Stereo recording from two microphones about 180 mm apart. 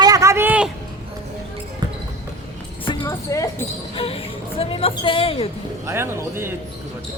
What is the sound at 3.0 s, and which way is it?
Music, 15° left (ahead or behind).